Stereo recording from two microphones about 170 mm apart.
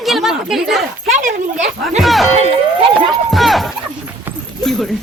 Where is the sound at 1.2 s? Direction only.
45° right (ahead or behind).